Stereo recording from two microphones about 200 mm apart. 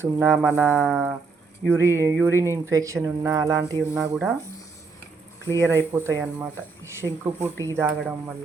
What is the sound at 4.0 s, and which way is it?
Speech, 5° right (ahead or behind).